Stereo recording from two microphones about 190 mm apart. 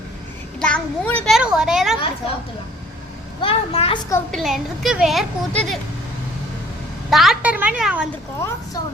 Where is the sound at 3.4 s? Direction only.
30° left (ahead or behind).